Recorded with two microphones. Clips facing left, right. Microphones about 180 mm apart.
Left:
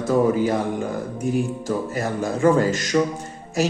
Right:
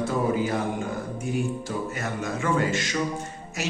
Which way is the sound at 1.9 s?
35° left (ahead or behind).